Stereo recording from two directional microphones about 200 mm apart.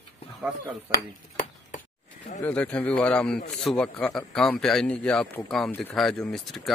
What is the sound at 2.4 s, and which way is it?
Speech, 5° left (ahead or behind).